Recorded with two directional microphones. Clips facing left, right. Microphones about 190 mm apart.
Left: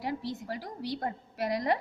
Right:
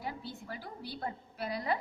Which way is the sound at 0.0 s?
80° left.